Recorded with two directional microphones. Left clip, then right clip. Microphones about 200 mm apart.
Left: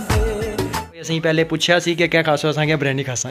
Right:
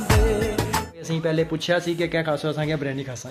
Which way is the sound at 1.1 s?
20° left (ahead or behind).